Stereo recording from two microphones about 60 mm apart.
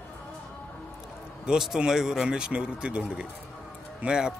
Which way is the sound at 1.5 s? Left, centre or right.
Centre.